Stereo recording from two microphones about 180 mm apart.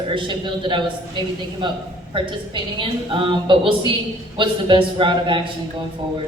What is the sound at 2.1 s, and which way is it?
A woman's voice, 25° right (ahead or behind).